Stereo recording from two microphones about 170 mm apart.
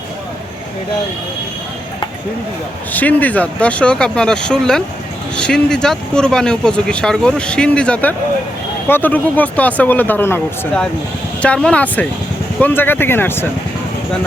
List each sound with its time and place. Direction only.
2.9 s speech: 10° left (ahead or behind)